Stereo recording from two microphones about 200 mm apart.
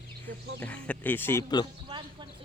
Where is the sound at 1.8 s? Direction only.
25° right (ahead or behind).